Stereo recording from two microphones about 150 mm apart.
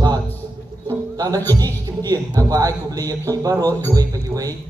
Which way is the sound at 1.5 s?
25° right (ahead or behind).